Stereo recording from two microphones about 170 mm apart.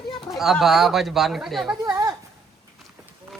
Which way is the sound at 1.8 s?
20° right (ahead or behind).